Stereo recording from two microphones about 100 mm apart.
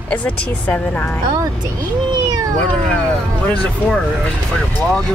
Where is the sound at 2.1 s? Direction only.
40° right (ahead or behind).